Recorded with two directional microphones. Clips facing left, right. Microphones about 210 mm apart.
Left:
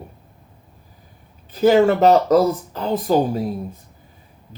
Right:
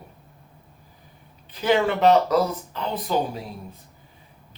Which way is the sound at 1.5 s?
45° left (ahead or behind).